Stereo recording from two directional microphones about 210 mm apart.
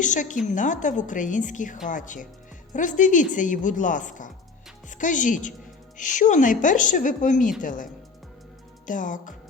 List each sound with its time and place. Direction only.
0.0 s a woman's voice: 35° left (ahead or behind)
8.9 s a woman's voice: 40° left (ahead or behind)